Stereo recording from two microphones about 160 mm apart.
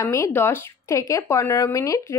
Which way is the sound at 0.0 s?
20° left (ahead or behind).